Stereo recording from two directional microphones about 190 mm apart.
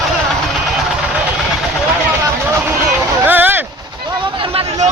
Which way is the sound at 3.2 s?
10° right (ahead or behind).